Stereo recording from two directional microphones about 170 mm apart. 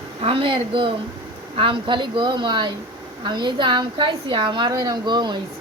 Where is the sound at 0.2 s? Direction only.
30° right (ahead or behind).